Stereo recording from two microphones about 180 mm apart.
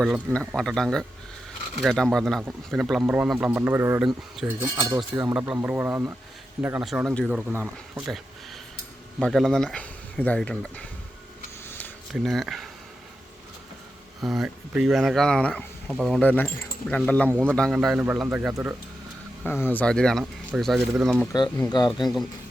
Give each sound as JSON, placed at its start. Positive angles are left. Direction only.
{"t": 0.0, "sound": "speech", "side_deg": -5}
{"t": 7.5, "sound": "speech", "side_deg": -10}
{"t": 11.6, "sound": "a sound", "side_deg": 10}
{"t": 12.1, "sound": "speech", "side_deg": 0}
{"t": 14.2, "sound": "speech", "side_deg": 0}
{"t": 17.2, "sound": "speech", "side_deg": -10}
{"t": 17.5, "sound": "speech", "side_deg": 0}
{"t": 19.5, "sound": "speech", "side_deg": 10}
{"t": 21.6, "sound": "speech", "side_deg": 25}